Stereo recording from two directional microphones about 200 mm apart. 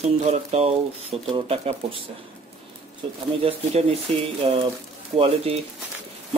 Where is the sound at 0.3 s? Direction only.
30° right (ahead or behind).